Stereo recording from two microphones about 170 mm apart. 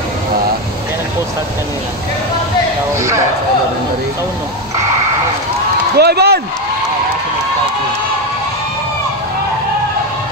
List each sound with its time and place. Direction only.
5.9 s speech: 70° right (ahead or behind)